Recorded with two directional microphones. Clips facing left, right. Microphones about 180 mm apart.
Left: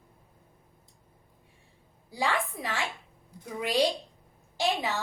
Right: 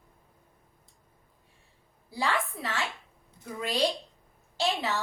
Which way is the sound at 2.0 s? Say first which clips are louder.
Even; 15° left (ahead or behind).